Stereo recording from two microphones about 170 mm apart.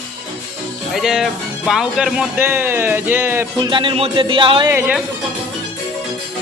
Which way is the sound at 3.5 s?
25° right (ahead or behind).